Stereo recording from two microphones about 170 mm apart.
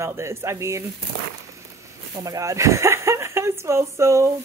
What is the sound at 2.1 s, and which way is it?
Speech, 20° right (ahead or behind).